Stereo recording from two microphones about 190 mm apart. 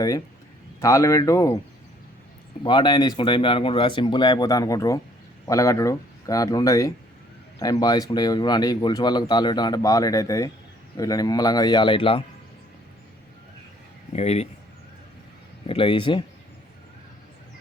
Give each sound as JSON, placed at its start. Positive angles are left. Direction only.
{"t": 0.8, "sound": "speech", "side_deg": 15}
{"t": 2.6, "sound": "speech", "side_deg": 25}
{"t": 14.1, "sound": "speech", "side_deg": 35}
{"t": 15.6, "sound": "speech", "side_deg": 30}